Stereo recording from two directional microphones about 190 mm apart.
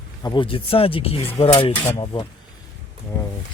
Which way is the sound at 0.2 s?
25° left (ahead or behind).